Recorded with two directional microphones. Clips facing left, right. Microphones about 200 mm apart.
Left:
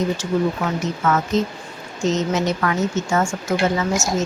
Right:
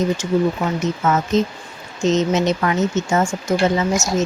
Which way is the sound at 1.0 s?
20° right (ahead or behind).